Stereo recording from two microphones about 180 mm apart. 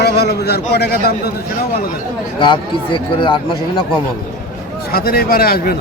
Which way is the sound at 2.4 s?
25° left (ahead or behind).